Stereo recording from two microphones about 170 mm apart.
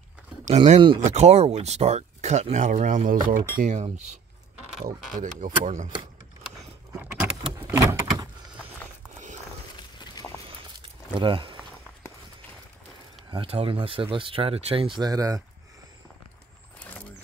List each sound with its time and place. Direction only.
0.5 s speech: 35° right (ahead or behind); by 3.4 s 55° right (ahead or behind)
3.5 s speech: 45° right (ahead or behind)
6.9 s keys jangling: 5° right (ahead or behind)
7.5 s vehicle: 15° right (ahead or behind)
9.9 s a sound: 20° left (ahead or behind)
10.5 s a sound: 30° right (ahead or behind)
13.3 s speech: 35° right (ahead or behind)
16.8 s mechanisms: 10° left (ahead or behind)